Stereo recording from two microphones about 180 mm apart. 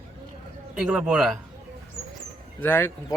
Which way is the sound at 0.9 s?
5° right (ahead or behind).